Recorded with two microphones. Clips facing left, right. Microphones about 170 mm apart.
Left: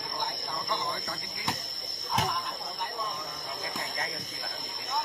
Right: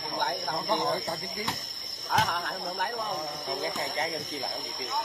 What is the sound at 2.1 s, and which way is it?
Speech, 65° right (ahead or behind).